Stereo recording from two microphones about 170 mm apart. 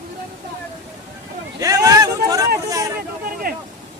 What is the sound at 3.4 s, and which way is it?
Hubbub, 60° right (ahead or behind).